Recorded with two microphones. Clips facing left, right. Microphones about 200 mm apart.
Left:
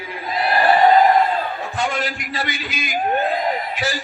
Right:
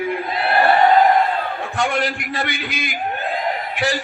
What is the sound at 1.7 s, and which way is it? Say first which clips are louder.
Male singing: right 3 dB; 60° right (ahead or behind).